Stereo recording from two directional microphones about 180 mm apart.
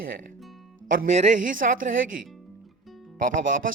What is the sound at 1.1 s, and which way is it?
Speech, 40° right (ahead or behind).